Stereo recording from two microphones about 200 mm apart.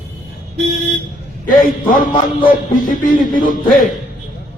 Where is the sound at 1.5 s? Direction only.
45° left (ahead or behind).